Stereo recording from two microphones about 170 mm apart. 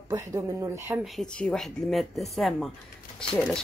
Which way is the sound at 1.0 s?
Centre (ahead or behind).